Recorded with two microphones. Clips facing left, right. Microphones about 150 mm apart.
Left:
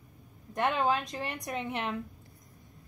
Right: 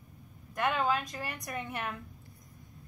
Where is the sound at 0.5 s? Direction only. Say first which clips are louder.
Left 2 dB; 20° left (ahead or behind).